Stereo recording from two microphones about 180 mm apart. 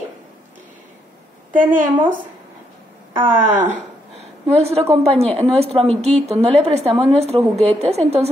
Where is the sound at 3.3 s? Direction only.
10° right (ahead or behind).